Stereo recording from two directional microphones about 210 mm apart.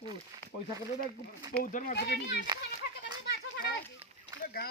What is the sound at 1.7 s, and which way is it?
Speech, 45° left (ahead or behind).